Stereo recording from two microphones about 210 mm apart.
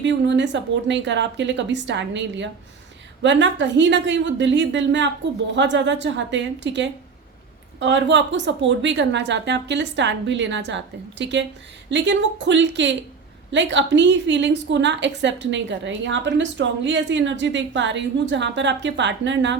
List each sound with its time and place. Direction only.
0.0 s a woman's voice: 55° right (ahead or behind)